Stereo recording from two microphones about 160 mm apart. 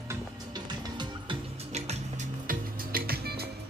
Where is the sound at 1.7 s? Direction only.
40° right (ahead or behind).